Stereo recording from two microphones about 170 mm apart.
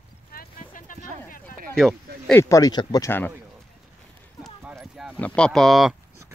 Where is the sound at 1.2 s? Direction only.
55° left (ahead or behind).